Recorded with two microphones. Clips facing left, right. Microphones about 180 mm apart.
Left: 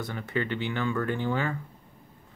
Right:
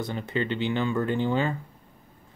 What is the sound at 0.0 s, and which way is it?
Speech, 20° right (ahead or behind).